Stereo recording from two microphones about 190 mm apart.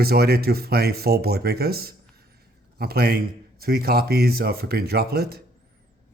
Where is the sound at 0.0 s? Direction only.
55° right (ahead or behind).